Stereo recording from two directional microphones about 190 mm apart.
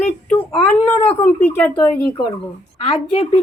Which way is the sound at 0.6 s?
10° left (ahead or behind).